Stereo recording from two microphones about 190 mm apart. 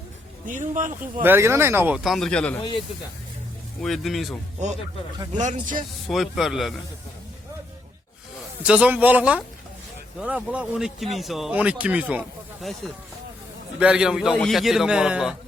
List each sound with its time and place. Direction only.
0.4 s speech: 45° right (ahead or behind)
1.2 s speech: 10° right (ahead or behind)
2.0 s a man's voice: centre (ahead or behind)
2.6 s speech: 25° left (ahead or behind)
3.8 s a man's voice: centre (ahead or behind)
6.1 s a man's voice: centre (ahead or behind)
8.6 s a man's voice: 5° right (ahead or behind)